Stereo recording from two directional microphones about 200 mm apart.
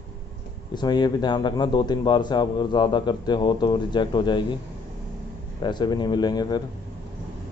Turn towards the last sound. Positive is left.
turn(degrees=20)  # may be behind; listen again after turning